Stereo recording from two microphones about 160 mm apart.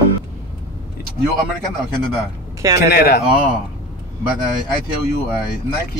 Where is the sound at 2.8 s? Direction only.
75° left (ahead or behind).